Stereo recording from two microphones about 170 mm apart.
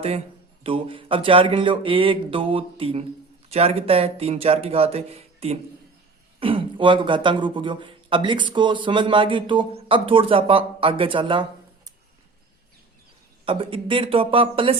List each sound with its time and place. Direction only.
0.6 s speech: 30° right (ahead or behind)
13.4 s speech: 30° right (ahead or behind)